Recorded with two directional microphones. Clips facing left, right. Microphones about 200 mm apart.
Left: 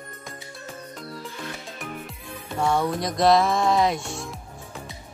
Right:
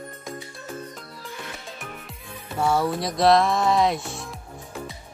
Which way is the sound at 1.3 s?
Centre (ahead or behind).